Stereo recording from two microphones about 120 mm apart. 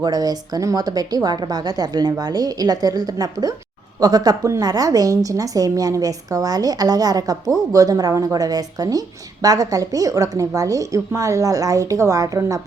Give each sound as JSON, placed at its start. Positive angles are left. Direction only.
{"t": 0.0, "sound": "a woman's voice", "side_deg": -30}